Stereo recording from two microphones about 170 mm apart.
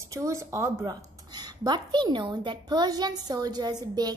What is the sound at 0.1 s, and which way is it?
A woman's voice, 20° right (ahead or behind).